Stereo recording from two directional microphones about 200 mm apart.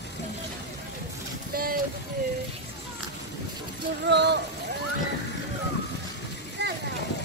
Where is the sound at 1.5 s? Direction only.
45° right (ahead or behind).